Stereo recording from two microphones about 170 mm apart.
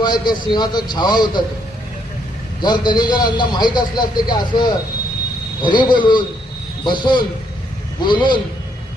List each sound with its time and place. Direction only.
0.0 s a man's voice: 25° left (ahead or behind)
2.6 s a man's voice: 25° left (ahead or behind)